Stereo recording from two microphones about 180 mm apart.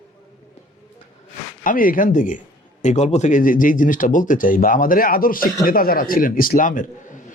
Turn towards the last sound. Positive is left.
turn(degrees=50)  # may be behind; listen again after turning